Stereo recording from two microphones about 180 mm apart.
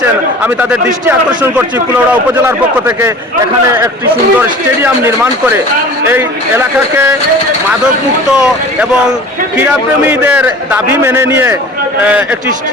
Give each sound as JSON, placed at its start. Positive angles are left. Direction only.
{"t": 0.0, "sound": "a man's voice", "side_deg": -10}
{"t": 2.3, "sound": "a man's voice", "side_deg": -15}
{"t": 4.4, "sound": "a man's voice", "side_deg": -10}
{"t": 8.4, "sound": "a man's voice", "side_deg": -5}